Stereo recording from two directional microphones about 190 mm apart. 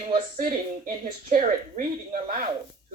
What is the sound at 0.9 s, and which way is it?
Speech, 40° right (ahead or behind).